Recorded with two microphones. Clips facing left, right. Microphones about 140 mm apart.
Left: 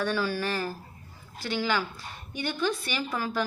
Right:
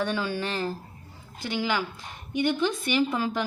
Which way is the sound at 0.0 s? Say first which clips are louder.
Even; 20° right (ahead or behind).